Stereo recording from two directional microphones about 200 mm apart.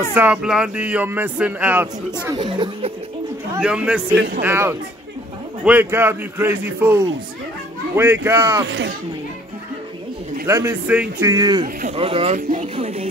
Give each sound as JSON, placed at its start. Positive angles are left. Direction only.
{"t": 0.1, "sound": "speech", "side_deg": -10}
{"t": 2.3, "sound": "speech", "side_deg": -25}
{"t": 3.5, "sound": "speech", "side_deg": -5}
{"t": 8.6, "sound": "speech", "side_deg": -60}
{"t": 10.4, "sound": "speech", "side_deg": -15}
{"t": 11.6, "sound": "speech", "side_deg": -35}